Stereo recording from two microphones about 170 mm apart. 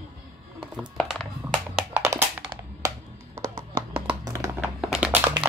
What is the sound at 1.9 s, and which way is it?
Music, 15° right (ahead or behind).